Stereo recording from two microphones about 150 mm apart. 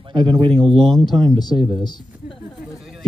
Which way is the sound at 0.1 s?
35° right (ahead or behind).